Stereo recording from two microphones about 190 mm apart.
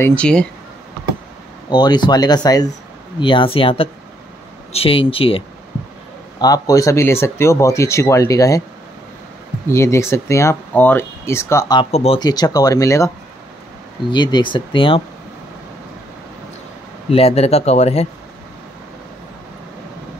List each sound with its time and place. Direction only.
0.0 s speech: 5° left (ahead or behind)
1.7 s speech: 20° left (ahead or behind)
6.4 s speech: 20° left (ahead or behind)
9.7 s speech: 15° left (ahead or behind)
11.8 s speech: 30° left (ahead or behind)
12.2 s speech: 20° left (ahead or behind)
14.1 s speech: 25° left (ahead or behind)
17.1 s speech: 35° left (ahead or behind)